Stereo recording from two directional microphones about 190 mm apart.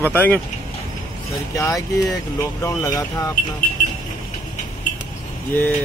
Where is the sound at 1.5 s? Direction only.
20° left (ahead or behind).